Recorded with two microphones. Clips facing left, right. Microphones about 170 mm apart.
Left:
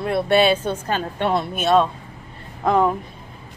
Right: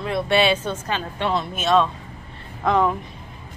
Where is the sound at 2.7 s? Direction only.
5° left (ahead or behind).